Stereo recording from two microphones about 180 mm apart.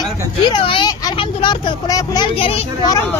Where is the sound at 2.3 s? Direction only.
30° left (ahead or behind).